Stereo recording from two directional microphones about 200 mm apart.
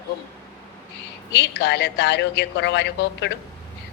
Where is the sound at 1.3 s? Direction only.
60° left (ahead or behind).